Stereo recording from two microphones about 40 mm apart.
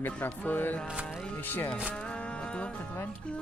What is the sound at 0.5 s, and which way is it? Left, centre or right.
Music, left.